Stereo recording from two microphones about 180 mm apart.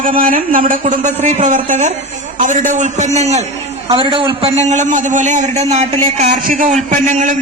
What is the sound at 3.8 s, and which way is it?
A man's voice, 30° right (ahead or behind).